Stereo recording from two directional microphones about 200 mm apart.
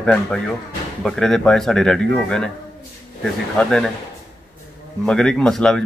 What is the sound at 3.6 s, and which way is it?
Speech, 5° left (ahead or behind).